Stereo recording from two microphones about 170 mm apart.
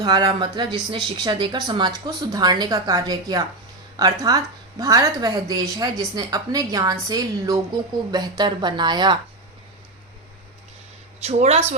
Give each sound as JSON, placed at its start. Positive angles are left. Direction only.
{"t": 0.0, "sound": "speech", "side_deg": -25}
{"t": 11.2, "sound": "speech", "side_deg": -40}